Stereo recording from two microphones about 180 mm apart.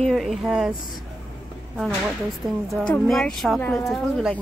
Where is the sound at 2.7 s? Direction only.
5° left (ahead or behind).